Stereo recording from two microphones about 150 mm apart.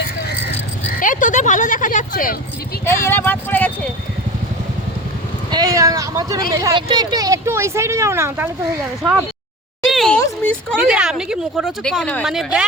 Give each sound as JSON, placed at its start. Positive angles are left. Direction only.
{"t": 0.9, "sound": "speech", "side_deg": 60}
{"t": 2.8, "sound": "speech", "side_deg": 15}
{"t": 5.5, "sound": "speech", "side_deg": -25}
{"t": 9.8, "sound": "a sound", "side_deg": 0}
{"t": 10.8, "sound": "speech", "side_deg": -5}